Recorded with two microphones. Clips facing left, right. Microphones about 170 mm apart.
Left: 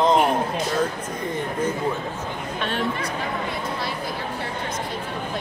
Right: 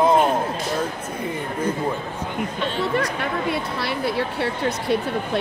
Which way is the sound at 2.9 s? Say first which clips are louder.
Right 4 dB; 70° right (ahead or behind).